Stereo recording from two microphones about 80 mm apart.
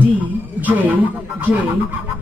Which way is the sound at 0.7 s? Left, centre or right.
Right.